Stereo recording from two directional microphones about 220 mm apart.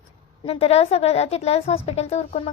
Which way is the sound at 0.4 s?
30° left (ahead or behind).